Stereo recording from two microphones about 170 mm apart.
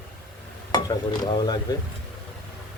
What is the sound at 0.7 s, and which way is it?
Cutlery, 25° left (ahead or behind).